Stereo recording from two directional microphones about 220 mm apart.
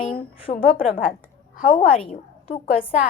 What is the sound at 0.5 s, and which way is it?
A woman's voice, 40° left (ahead or behind).